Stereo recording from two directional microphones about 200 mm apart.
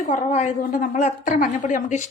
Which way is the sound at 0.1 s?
40° left (ahead or behind).